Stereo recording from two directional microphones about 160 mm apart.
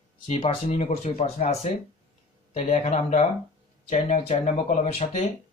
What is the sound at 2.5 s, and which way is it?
Speech, 45° left (ahead or behind).